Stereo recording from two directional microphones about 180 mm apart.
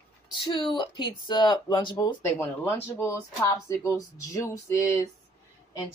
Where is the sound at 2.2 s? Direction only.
15° left (ahead or behind).